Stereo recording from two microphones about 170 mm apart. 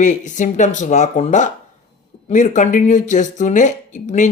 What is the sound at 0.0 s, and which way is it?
Speech, 45° left (ahead or behind).